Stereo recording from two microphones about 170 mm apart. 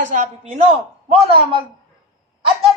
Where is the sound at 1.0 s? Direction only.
30° right (ahead or behind).